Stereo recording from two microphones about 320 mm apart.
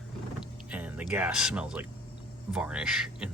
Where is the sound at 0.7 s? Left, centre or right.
Centre.